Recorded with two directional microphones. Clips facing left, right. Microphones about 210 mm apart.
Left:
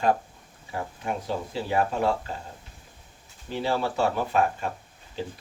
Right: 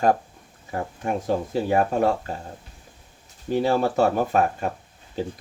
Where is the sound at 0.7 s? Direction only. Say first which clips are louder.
Right 4 dB; 45° right (ahead or behind).